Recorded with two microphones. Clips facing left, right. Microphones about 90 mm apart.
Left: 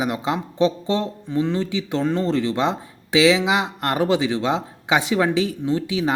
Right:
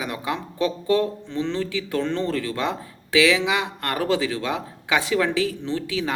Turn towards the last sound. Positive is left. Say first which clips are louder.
# left 4 dB
turn(degrees=20)  # may be behind; listen again after turning